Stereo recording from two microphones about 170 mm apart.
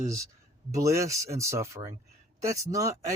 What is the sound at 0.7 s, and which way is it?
Speech, 20° right (ahead or behind).